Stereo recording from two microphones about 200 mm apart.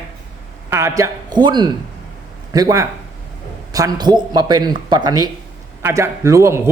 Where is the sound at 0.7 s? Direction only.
15° right (ahead or behind).